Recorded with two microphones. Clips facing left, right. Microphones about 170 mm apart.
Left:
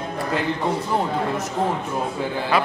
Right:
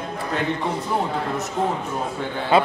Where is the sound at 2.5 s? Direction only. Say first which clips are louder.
Right 4 dB; 25° right (ahead or behind).